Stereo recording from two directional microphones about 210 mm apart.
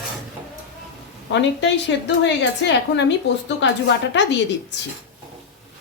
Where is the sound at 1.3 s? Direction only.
55° left (ahead or behind).